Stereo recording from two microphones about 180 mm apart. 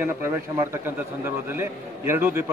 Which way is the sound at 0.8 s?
10° right (ahead or behind).